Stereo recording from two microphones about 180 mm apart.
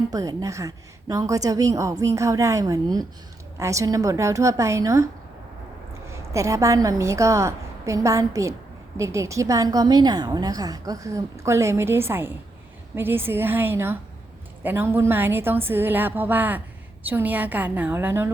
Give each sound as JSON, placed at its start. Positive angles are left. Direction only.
{"t": 0.1, "sound": "a woman's voice", "side_deg": -20}
{"t": 6.1, "sound": "a woman's voice", "side_deg": -15}